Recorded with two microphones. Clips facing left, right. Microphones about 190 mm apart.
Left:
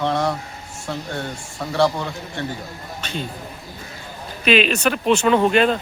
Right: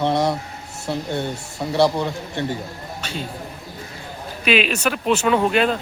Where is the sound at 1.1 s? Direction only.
20° right (ahead or behind).